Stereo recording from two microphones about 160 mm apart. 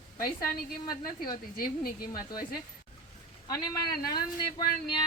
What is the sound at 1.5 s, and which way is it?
Speech, 65° left (ahead or behind).